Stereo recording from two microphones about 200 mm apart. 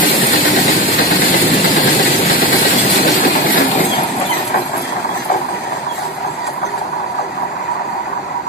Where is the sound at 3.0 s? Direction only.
45° left (ahead or behind).